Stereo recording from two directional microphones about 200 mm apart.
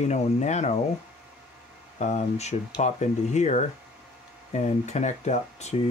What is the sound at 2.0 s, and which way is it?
Speech, 35° left (ahead or behind).